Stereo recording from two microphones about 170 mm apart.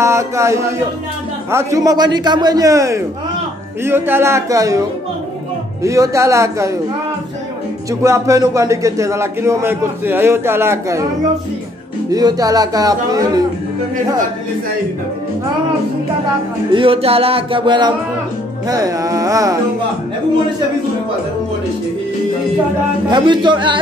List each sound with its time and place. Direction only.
0.0 s a man's voice: 15° right (ahead or behind)
8.0 s a man's voice: 20° right (ahead or behind)
12.1 s a man's voice: 20° right (ahead or behind)
16.7 s a man's voice: 30° right (ahead or behind)
23.0 s a man's voice: 25° right (ahead or behind)